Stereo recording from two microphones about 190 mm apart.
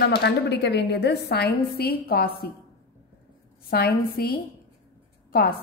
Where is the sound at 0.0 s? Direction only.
60° left (ahead or behind).